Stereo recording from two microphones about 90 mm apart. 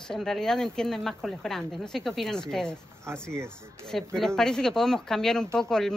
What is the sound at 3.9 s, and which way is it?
Speech, centre (ahead or behind).